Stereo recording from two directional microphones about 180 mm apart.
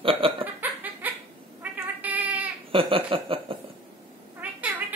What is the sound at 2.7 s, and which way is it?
Chuckle, 30° right (ahead or behind).